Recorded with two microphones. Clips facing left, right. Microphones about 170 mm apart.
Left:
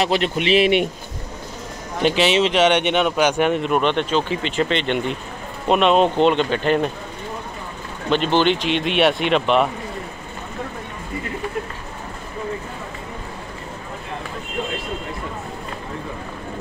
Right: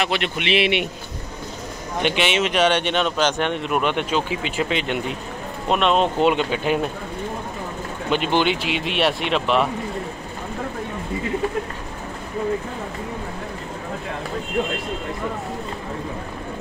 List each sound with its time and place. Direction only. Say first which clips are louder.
0.0 s speech: left 4 dB; 35° left (ahead or behind)
2.0 s speech: left 4 dB; 35° left (ahead or behind)
2.5 s speech: left 2 dB; 20° left (ahead or behind); by 6.9 s 5° right (ahead or behind)
8.1 s speech: left 3 dB; 10° right (ahead or behind)